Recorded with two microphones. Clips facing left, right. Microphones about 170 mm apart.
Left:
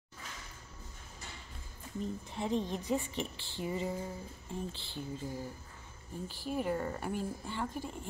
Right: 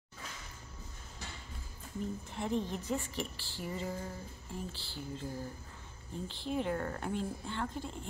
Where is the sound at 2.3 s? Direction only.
15° left (ahead or behind).